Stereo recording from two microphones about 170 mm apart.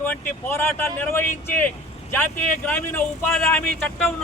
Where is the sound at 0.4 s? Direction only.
15° left (ahead or behind).